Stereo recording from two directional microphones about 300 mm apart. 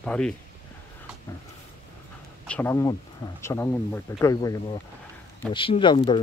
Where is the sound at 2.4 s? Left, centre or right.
Centre.